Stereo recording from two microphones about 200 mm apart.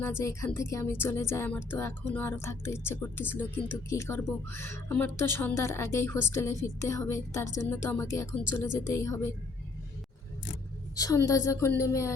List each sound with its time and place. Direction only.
0.0 s speech: 15° left (ahead or behind)
10.9 s speech: 15° left (ahead or behind)